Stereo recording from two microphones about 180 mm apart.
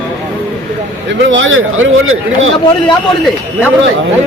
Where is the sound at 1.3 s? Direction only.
90° right.